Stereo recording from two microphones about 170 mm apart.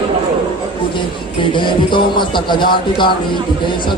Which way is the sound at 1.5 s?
30° left (ahead or behind).